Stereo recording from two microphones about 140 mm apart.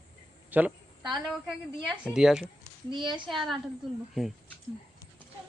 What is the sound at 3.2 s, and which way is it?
Speech, centre (ahead or behind).